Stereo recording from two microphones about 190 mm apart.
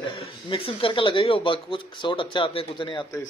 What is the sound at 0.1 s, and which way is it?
Speech, 30° left (ahead or behind).